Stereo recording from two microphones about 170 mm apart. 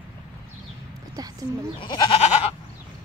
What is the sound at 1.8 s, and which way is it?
Goat, 25° left (ahead or behind).